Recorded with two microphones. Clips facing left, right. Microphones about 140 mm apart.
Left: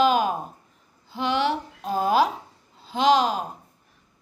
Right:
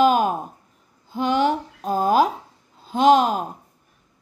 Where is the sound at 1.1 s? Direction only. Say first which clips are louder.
Right 4 dB; 45° right (ahead or behind).